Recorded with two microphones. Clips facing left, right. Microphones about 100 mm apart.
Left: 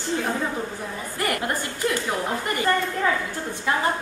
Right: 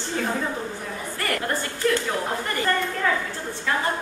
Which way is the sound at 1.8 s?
15° left (ahead or behind).